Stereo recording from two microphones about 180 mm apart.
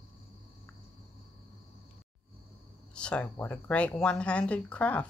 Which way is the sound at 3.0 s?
5° left (ahead or behind).